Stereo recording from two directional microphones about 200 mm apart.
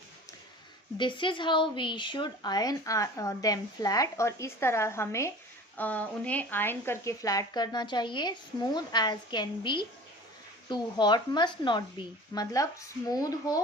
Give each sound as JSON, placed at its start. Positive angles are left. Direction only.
{"t": 0.9, "sound": "speech", "side_deg": 25}